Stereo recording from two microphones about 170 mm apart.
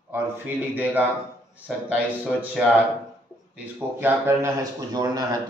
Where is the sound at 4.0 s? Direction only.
15° right (ahead or behind).